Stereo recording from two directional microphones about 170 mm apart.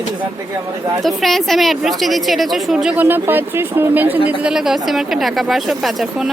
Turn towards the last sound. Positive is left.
turn(degrees=0)  # may be behind; listen again after turning